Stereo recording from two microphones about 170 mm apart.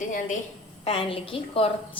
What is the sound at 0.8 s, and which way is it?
A woman's voice, 35° left (ahead or behind).